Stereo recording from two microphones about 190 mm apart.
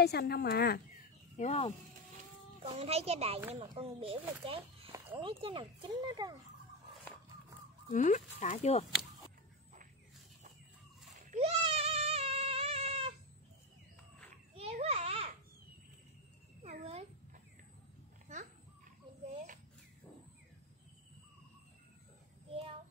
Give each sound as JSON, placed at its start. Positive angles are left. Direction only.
{"t": 0.0, "sound": "speech", "side_deg": 60}
{"t": 1.3, "sound": "speech", "side_deg": 40}
{"t": 2.6, "sound": "a child's voice", "side_deg": -30}
{"t": 7.9, "sound": "speech", "side_deg": 40}
{"t": 11.2, "sound": "a sound", "side_deg": -35}
{"t": 14.5, "sound": "babbling", "side_deg": -30}
{"t": 16.6, "sound": "a sound", "side_deg": -35}
{"t": 18.3, "sound": "dog", "side_deg": -40}